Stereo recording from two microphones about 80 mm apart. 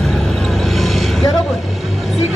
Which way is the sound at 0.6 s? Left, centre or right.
Centre.